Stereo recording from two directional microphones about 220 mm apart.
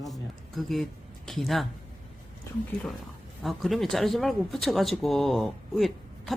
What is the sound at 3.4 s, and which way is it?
Speech, centre (ahead or behind).